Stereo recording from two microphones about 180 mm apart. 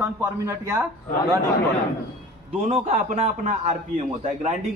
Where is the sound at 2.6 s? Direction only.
40° right (ahead or behind).